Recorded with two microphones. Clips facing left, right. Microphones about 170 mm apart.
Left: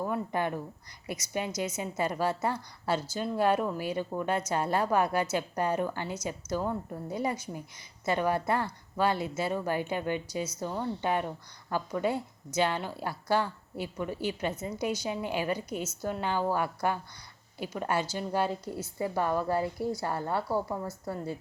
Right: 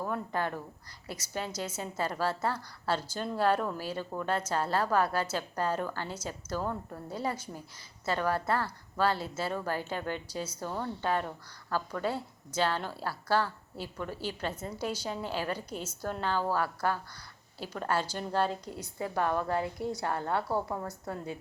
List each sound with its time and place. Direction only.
0.0 s a woman's voice: 15° left (ahead or behind)